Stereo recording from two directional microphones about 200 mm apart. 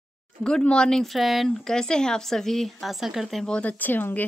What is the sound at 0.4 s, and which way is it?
Speech, 5° left (ahead or behind).